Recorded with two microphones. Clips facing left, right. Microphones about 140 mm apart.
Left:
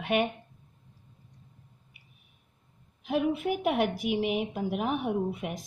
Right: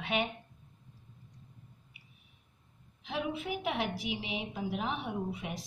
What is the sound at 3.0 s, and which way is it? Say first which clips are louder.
A woman's voice: left 8 dB; 50° left (ahead or behind).